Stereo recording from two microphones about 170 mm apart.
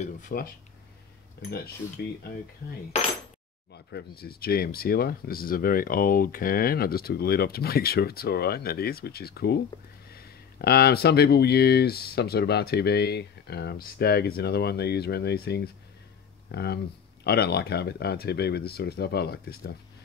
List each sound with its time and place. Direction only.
0.0 s speech: 55° left (ahead or behind)
1.4 s speech: 70° left (ahead or behind)
3.7 s speech: 70° left (ahead or behind)